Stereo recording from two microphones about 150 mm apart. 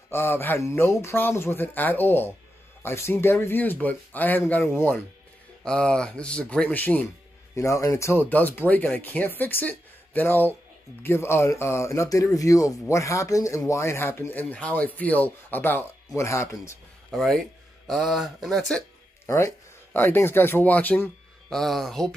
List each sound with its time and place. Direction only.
0.1 s speech: 15° left (ahead or behind)
17.1 s speech: centre (ahead or behind)
19.2 s speech: 20° left (ahead or behind); by 22.1 s centre (ahead or behind)